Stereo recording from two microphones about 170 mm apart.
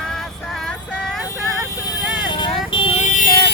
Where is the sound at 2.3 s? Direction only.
30° left (ahead or behind); by 3.3 s 45° left (ahead or behind).